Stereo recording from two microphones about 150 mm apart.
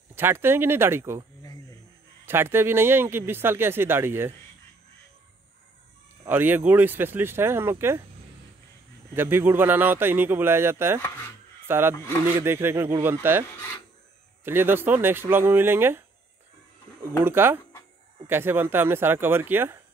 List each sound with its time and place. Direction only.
0.1 s a man's voice: 15° right (ahead or behind)
2.2 s a man's voice: 15° right (ahead or behind)
6.2 s a man's voice: 15° right (ahead or behind)
9.1 s a man's voice: 15° right (ahead or behind)
11.0 s speech: 15° left (ahead or behind)
11.6 s a man's voice: 15° right (ahead or behind)
17.2 s a man's voice: 15° right (ahead or behind)